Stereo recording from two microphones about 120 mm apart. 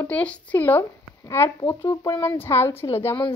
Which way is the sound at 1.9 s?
35° left (ahead or behind).